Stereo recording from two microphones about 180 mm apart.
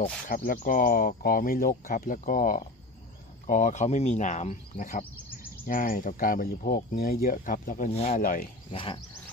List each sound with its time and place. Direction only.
0.3 s speech: 50° left (ahead or behind)
7.9 s speech: 35° left (ahead or behind)
8.2 s speech: 50° left (ahead or behind)
8.7 s bird: 25° left (ahead or behind)